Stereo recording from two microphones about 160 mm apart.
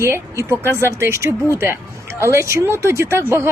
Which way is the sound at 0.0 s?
15° right (ahead or behind).